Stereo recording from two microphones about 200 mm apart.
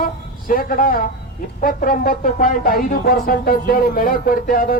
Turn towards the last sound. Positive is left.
turn(degrees=45)  # may be behind; listen again after turning